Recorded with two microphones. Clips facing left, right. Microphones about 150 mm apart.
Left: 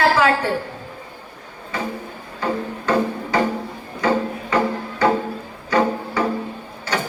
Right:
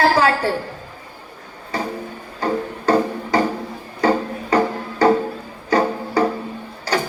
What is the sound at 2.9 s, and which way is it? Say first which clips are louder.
Music: right 3 dB; 35° right (ahead or behind).